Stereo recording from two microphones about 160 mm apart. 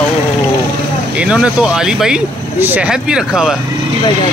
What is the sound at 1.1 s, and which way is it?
Speech, 5° right (ahead or behind).